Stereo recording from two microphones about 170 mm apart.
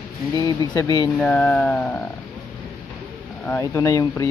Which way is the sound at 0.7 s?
20° left (ahead or behind).